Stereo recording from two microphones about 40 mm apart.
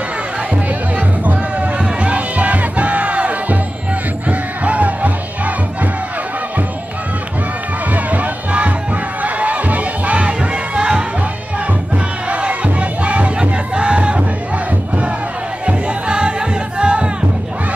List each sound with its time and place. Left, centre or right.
0.9 s music: right
4.3 s battle cry: right
7.9 s run: right
9.2 s music: right
12.3 s crowd: right
15.6 s music: right